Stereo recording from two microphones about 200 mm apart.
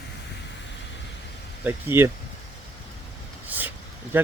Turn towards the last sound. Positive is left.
turn(degrees=-10)  # may be behind; listen again after turning